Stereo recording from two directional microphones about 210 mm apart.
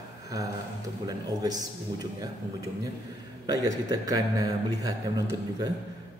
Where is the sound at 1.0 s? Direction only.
15° right (ahead or behind).